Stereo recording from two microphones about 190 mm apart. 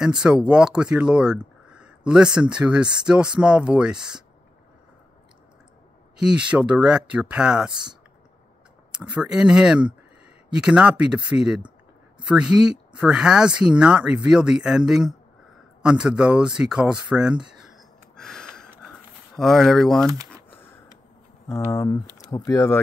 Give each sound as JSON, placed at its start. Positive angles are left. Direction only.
{"t": 0.0, "sound": "speech", "side_deg": -5}
{"t": 6.1, "sound": "speech", "side_deg": -5}
{"t": 8.9, "sound": "speech", "side_deg": -5}
{"t": 15.8, "sound": "a sound", "side_deg": -5}
{"t": 20.1, "sound": "a sound", "side_deg": -20}
{"t": 21.5, "sound": "speech", "side_deg": 15}